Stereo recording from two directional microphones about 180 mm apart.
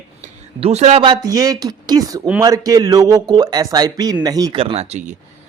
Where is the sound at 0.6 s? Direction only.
35° right (ahead or behind); by 4.5 s 20° right (ahead or behind).